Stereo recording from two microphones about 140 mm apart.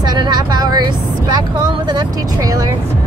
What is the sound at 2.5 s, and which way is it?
Speech, 25° right (ahead or behind).